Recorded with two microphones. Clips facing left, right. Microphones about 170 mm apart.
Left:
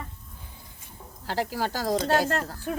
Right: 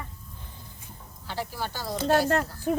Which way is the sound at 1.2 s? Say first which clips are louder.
Left 5 dB; 90° left.